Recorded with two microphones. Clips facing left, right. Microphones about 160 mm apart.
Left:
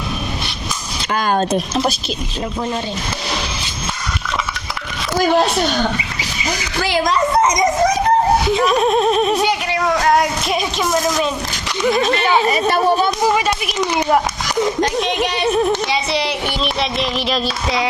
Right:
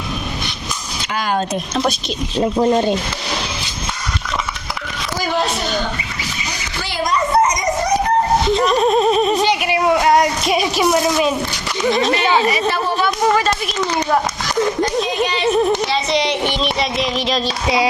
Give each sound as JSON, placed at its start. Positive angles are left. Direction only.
{"t": 1.1, "sound": "a sound", "side_deg": 50}
{"t": 2.4, "sound": "speech", "side_deg": -30}
{"t": 6.8, "sound": "children playing", "side_deg": 90}
{"t": 8.4, "sound": "speech", "side_deg": 5}
{"t": 9.6, "sound": "a sound", "side_deg": -15}
{"t": 11.9, "sound": "speech", "side_deg": 0}
{"t": 12.5, "sound": "speech", "side_deg": 45}
{"t": 13.2, "sound": "speech", "side_deg": 10}
{"t": 15.4, "sound": "speech", "side_deg": 0}